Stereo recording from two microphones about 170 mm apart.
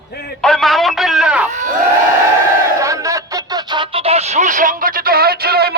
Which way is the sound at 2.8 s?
20° right (ahead or behind).